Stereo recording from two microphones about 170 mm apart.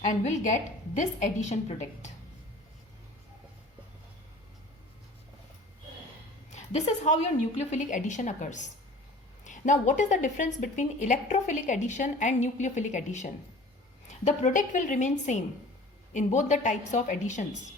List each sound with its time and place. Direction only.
0.0 s a woman's voice: 45° left (ahead or behind)
6.5 s a woman's voice: 40° left (ahead or behind)
9.4 s a sound: 45° left (ahead or behind)
10.0 s a woman's voice: 45° left (ahead or behind)